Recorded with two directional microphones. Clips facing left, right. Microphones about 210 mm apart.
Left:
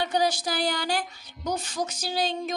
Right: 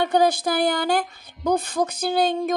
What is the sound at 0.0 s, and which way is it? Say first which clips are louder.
A woman's voice: right 6 dB; 55° right (ahead or behind).